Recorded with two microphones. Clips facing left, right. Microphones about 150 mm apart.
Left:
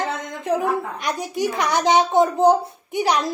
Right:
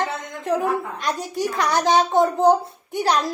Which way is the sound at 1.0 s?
15° left (ahead or behind).